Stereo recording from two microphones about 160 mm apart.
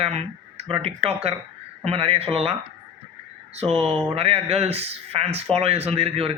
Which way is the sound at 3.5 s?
40° right (ahead or behind).